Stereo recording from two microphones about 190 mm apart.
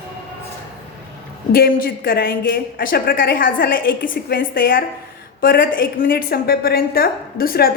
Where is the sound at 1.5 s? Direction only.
50° left (ahead or behind).